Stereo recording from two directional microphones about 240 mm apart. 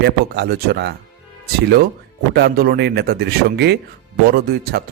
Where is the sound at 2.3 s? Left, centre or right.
Right.